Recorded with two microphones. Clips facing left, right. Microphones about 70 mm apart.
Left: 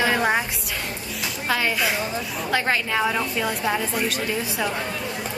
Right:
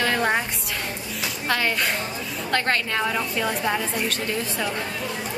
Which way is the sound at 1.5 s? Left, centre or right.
Centre.